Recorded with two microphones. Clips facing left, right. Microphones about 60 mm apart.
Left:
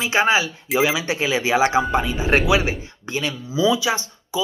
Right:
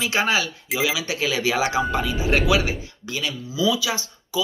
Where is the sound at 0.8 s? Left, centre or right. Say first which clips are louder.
Left 3 dB; left.